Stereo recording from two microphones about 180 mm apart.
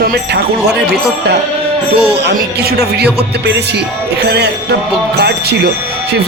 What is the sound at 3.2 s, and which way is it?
Music, 65° right (ahead or behind).